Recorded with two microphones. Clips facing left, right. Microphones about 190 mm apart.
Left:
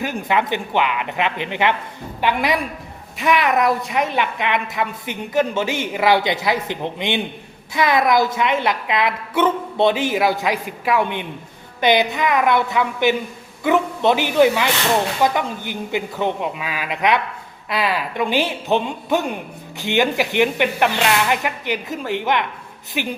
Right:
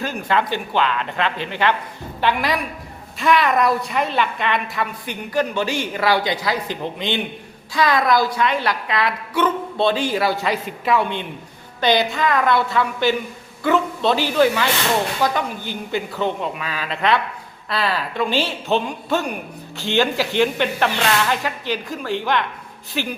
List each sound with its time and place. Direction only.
0.0 s a man's voice: 15° left (ahead or behind)